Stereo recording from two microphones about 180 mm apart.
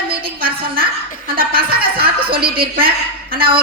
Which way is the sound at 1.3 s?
55° right (ahead or behind).